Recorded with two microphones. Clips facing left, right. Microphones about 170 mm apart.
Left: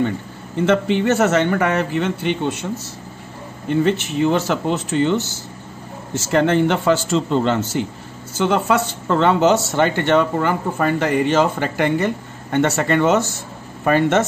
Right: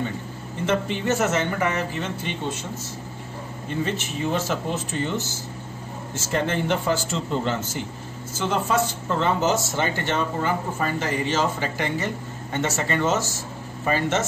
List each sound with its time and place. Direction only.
0.7 s a man's voice: 75° left (ahead or behind)
3.8 s a man's voice: 75° left (ahead or behind); by 14.2 s 60° left (ahead or behind)